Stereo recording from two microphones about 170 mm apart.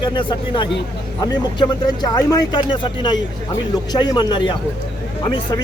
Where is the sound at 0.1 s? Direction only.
25° left (ahead or behind).